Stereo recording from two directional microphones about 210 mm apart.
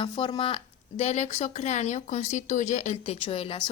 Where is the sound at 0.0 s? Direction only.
25° left (ahead or behind).